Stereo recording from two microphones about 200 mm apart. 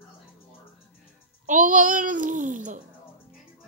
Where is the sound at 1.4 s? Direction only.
40° right (ahead or behind).